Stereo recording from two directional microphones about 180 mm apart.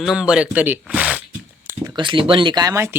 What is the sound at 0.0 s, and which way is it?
Speech, 5° right (ahead or behind).